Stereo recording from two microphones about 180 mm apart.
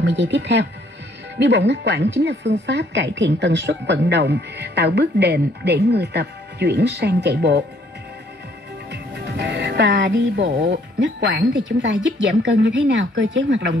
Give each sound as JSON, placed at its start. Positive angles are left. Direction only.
{"t": 0.0, "sound": "a woman's voice", "side_deg": -75}
{"t": 8.9, "sound": "speech", "side_deg": -70}